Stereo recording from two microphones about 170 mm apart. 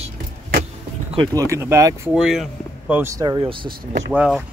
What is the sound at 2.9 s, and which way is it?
Speech, 15° right (ahead or behind).